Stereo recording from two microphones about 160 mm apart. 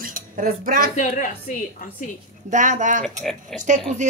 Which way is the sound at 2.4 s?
50° right (ahead or behind).